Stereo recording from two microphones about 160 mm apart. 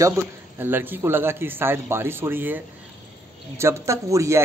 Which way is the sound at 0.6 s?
15° right (ahead or behind).